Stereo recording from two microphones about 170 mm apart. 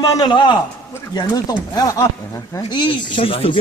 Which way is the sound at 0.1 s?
25° left (ahead or behind).